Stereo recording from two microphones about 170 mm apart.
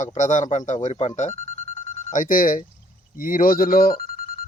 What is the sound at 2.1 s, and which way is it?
Speech, 55° left (ahead or behind).